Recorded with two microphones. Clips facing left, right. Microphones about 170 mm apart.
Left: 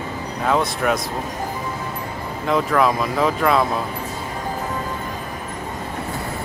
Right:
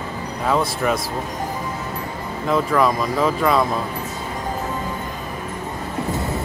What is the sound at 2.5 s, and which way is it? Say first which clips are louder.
Speech: even; centre (ahead or behind).